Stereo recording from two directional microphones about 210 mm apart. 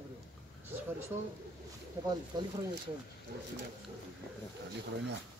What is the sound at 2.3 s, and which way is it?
Speech, 20° right (ahead or behind).